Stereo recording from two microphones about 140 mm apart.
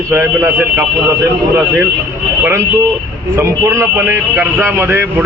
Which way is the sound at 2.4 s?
20° right (ahead or behind).